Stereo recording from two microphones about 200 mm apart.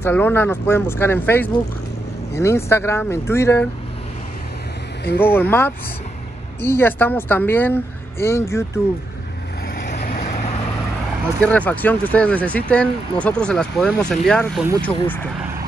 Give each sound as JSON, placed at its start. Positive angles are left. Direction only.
{"t": 0.0, "sound": "speech", "side_deg": 10}
{"t": 5.2, "sound": "speech", "side_deg": 10}
{"t": 9.8, "sound": "vehicle", "side_deg": 50}
{"t": 10.1, "sound": "vehicle", "side_deg": 35}
{"t": 11.4, "sound": "speech", "side_deg": 5}